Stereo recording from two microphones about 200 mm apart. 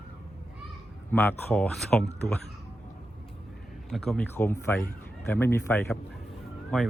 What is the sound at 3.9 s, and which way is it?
Speech, centre (ahead or behind).